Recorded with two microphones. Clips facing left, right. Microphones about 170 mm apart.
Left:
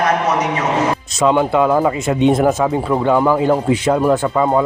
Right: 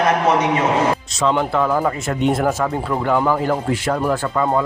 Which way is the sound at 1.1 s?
15° left (ahead or behind).